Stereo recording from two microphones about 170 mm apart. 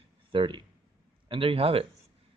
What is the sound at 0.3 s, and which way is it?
Speech, 30° right (ahead or behind).